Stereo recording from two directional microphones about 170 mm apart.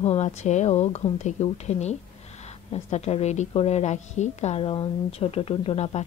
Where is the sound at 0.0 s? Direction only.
40° left (ahead or behind).